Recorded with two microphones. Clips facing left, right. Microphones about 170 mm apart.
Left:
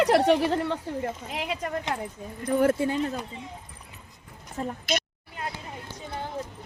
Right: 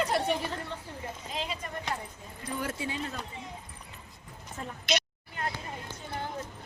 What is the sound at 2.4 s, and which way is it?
Speech, 50° left (ahead or behind).